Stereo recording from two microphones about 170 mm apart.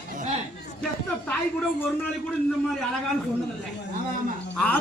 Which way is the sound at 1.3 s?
5° left (ahead or behind).